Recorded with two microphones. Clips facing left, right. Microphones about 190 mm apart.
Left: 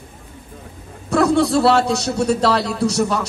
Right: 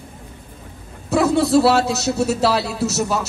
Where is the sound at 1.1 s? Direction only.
5° right (ahead or behind).